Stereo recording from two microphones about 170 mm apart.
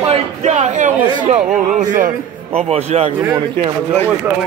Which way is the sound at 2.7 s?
40° right (ahead or behind).